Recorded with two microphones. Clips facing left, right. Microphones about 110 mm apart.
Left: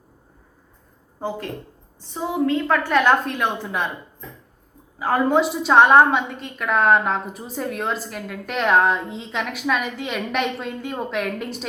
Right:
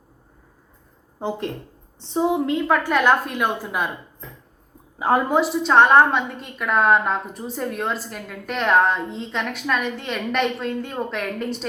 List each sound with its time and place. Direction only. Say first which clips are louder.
2.0 s a woman's voice: right 3 dB; 25° right (ahead or behind)
2.9 s a woman's voice: left 3 dB; 5° right (ahead or behind)
4.9 s a woman's voice: right 2 dB; 20° right (ahead or behind)
5.3 s a woman's voice: left 1 dB; centre (ahead or behind)